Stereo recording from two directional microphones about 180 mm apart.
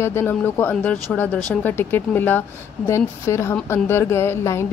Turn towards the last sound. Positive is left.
turn(degrees=15)  # may be behind; listen again after turning